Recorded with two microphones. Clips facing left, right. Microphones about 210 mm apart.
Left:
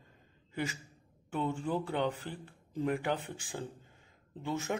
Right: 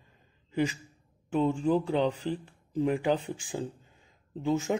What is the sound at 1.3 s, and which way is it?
Speech, 25° right (ahead or behind).